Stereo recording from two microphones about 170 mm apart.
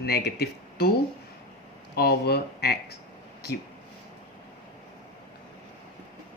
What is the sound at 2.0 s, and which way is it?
Speech, 65° left (ahead or behind).